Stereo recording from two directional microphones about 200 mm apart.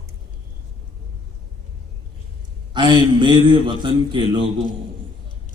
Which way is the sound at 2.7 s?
25° right (ahead or behind).